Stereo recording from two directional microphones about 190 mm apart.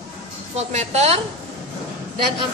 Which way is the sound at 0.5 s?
35° right (ahead or behind).